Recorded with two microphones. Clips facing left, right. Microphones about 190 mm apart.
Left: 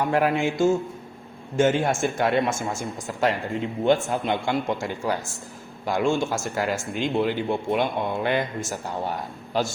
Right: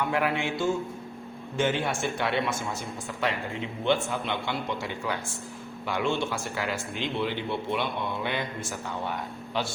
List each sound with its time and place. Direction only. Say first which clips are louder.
0.0 s speech: left 5 dB; 40° left (ahead or behind)
1.5 s speech: left 6 dB; 45° left (ahead or behind)